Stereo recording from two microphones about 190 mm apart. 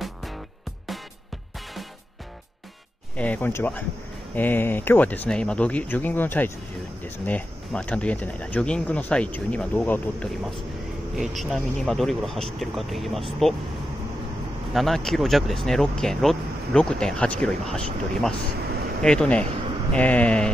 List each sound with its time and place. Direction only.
0.0 s music: centre (ahead or behind)
3.2 s speech: 10° left (ahead or behind)
14.7 s speech: centre (ahead or behind)